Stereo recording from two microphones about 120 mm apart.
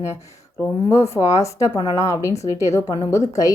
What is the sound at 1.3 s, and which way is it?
A woman's voice, 25° left (ahead or behind).